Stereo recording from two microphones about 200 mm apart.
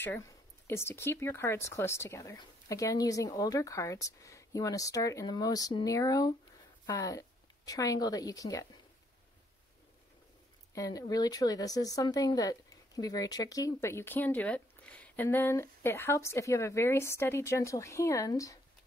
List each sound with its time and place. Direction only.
0.7 s a woman's voice: 10° left (ahead or behind)
10.7 s speech: 15° left (ahead or behind)